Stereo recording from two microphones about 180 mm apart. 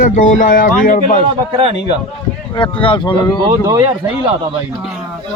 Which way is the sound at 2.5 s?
30° left (ahead or behind).